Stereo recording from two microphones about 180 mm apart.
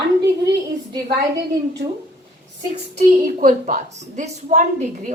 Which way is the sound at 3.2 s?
45° right (ahead or behind).